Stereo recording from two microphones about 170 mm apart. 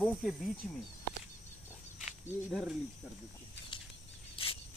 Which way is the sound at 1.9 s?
Centre (ahead or behind).